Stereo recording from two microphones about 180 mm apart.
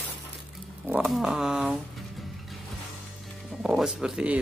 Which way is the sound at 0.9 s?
5° right (ahead or behind).